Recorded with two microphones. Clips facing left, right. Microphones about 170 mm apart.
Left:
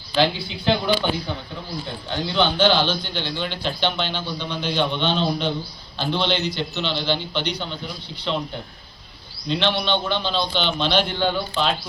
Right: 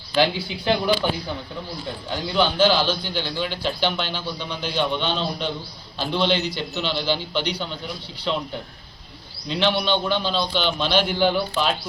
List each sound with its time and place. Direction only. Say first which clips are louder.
0.2 s a man's voice: even; 10° right (ahead or behind)
9.5 s a man's voice: even; 5° right (ahead or behind)